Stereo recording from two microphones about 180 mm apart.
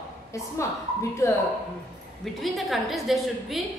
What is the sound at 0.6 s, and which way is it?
Speech, 15° left (ahead or behind).